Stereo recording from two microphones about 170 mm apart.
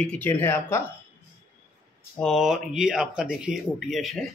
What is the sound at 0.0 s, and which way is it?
Speech, 5° left (ahead or behind).